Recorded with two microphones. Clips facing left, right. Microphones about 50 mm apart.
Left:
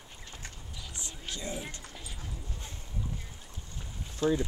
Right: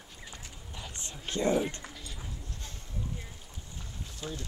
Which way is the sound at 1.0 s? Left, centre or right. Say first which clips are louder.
Right 10 dB; right.